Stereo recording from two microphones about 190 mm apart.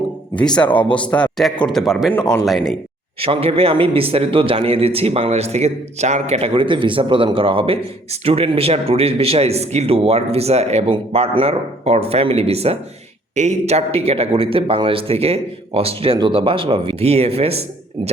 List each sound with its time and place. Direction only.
0.3 s a man's voice: 5° left (ahead or behind)
3.2 s a man's voice: 30° right (ahead or behind)